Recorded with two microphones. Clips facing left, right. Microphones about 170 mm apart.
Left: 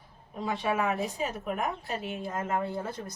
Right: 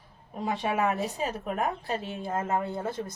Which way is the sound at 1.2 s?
40° right (ahead or behind).